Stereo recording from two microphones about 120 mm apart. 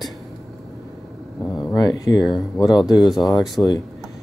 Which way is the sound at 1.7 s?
30° left (ahead or behind).